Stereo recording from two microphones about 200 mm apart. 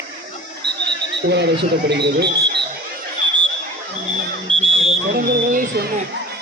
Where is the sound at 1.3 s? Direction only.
60° right (ahead or behind).